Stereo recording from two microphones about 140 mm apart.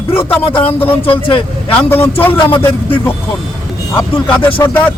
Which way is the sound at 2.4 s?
40° left (ahead or behind).